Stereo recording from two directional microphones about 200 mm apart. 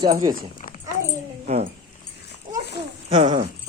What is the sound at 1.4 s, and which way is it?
Speech, 35° right (ahead or behind).